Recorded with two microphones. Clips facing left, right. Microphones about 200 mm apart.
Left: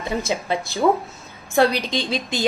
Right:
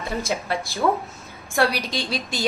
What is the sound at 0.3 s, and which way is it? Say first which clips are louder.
A woman's voice: left 2 dB; 20° left (ahead or behind).